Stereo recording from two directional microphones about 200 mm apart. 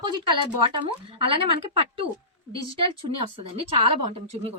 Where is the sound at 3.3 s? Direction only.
30° right (ahead or behind).